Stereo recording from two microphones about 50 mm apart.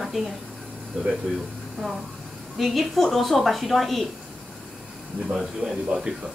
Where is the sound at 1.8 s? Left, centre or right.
Centre.